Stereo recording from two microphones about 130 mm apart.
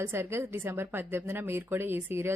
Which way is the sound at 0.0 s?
20° right (ahead or behind).